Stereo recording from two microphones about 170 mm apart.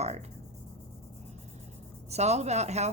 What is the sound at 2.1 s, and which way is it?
Speech, 40° right (ahead or behind).